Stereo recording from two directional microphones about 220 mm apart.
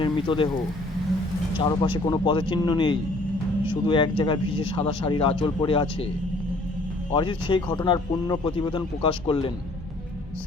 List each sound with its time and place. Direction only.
0.0 s speech: 25° left (ahead or behind)
1.5 s speech: 20° left (ahead or behind)
7.1 s speech: 20° left (ahead or behind)